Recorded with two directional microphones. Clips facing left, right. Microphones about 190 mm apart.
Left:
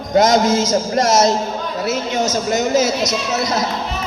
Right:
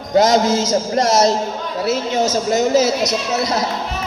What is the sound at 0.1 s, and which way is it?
A man's voice, 35° right (ahead or behind).